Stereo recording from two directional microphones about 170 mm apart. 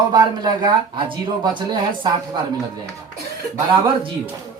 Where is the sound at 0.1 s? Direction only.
25° right (ahead or behind).